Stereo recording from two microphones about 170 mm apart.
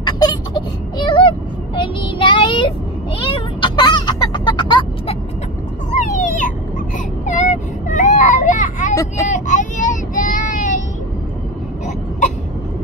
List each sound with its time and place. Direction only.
0.0 s wail: 25° left (ahead or behind)
1.8 s child singing: 30° left (ahead or behind)
3.2 s music: 30° left (ahead or behind)
5.9 s a sound: 45° left (ahead or behind)
7.2 s vehicle: 45° left (ahead or behind)
8.9 s vehicle: 20° left (ahead or behind)
9.3 s child singing: 45° left (ahead or behind)